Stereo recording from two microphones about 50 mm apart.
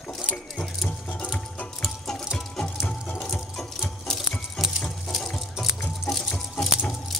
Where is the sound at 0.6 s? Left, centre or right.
Centre.